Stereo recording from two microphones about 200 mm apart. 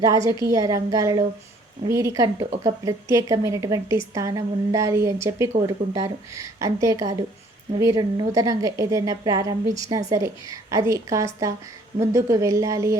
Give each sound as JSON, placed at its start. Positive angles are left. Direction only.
{"t": 0.0, "sound": "a woman's voice", "side_deg": -15}